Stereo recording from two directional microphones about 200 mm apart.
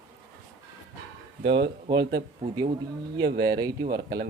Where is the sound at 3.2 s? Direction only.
55° right (ahead or behind).